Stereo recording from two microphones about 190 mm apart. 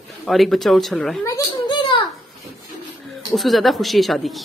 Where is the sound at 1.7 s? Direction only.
25° left (ahead or behind).